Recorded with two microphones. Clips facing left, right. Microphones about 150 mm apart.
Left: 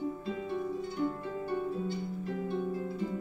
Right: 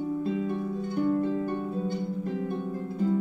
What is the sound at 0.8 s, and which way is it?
Harp, 50° right (ahead or behind).